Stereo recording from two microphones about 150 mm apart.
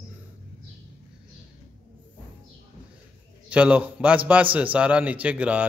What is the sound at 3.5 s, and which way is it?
Speech, 10° right (ahead or behind).